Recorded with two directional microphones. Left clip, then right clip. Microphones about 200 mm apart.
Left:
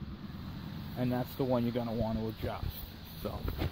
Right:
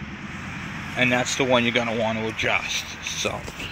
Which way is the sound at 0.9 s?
Centre (ahead or behind).